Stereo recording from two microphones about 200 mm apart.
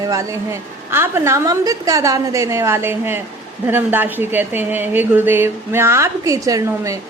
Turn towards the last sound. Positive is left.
turn(degrees=-15)  # may be behind; listen again after turning